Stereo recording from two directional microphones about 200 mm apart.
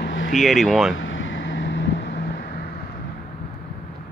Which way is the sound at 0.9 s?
75° left (ahead or behind).